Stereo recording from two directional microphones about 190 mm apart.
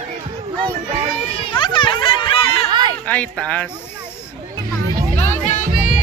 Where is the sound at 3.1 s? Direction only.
5° left (ahead or behind).